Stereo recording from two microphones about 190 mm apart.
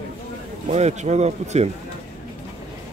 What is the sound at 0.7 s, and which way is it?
Speech, 35° right (ahead or behind).